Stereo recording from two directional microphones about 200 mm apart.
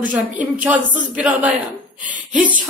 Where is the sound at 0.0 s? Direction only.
5° right (ahead or behind).